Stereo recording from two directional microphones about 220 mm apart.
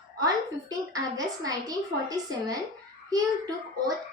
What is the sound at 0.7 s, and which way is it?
A woman's voice, 15° right (ahead or behind).